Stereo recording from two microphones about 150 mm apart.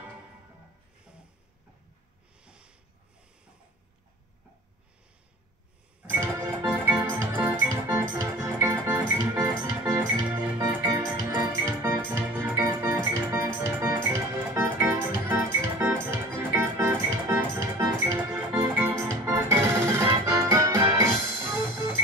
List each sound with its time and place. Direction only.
2.4 s snort: 5° right (ahead or behind)
6.0 s music: 20° right (ahead or behind)
6.6 s music: 10° right (ahead or behind)
7.0 s organ: 20° right (ahead or behind)
8.2 s music: 20° right (ahead or behind)
18.9 s organ: 20° right (ahead or behind)
20.9 s music: 15° right (ahead or behind)